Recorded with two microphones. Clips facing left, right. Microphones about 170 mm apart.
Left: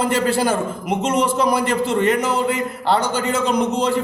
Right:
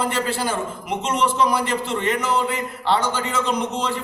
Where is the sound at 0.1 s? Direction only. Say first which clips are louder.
Left 6 dB; 40° left (ahead or behind).